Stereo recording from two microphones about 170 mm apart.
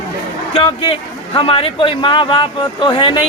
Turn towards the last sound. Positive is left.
turn(degrees=30)  # may be behind; listen again after turning